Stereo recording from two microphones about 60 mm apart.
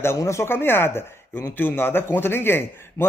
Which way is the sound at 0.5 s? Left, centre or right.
Left.